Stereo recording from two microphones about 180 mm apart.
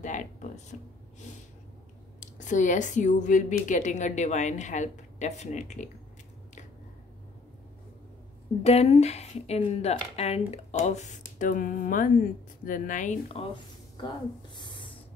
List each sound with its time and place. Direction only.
0.0 s speech: 45° left (ahead or behind)
2.1 s a woman's voice: 45° left (ahead or behind)
8.6 s a woman's voice: 35° left (ahead or behind)
14.5 s a sound: 25° left (ahead or behind)